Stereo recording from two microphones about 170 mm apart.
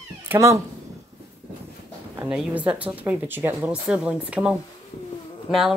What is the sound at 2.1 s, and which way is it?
Speech, 5° right (ahead or behind).